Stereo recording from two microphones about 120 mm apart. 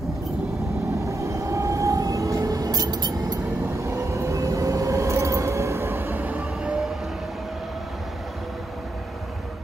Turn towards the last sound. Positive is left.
turn(degrees=0)  # may be behind; listen again after turning